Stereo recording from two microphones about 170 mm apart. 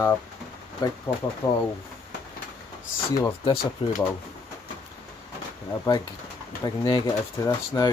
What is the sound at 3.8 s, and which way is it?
Speech, 30° left (ahead or behind).